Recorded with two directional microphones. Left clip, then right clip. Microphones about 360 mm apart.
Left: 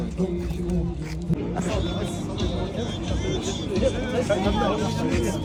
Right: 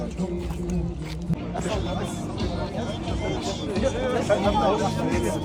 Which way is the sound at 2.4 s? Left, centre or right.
Centre.